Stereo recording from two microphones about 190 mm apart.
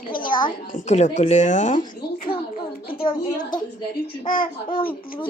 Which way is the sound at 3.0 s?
25° left (ahead or behind).